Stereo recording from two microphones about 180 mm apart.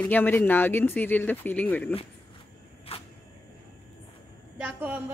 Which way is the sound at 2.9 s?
35° left (ahead or behind).